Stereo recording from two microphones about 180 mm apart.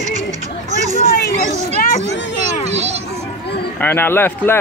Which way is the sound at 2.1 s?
80° left.